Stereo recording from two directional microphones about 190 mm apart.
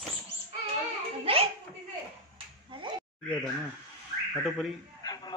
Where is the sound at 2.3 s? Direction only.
25° right (ahead or behind).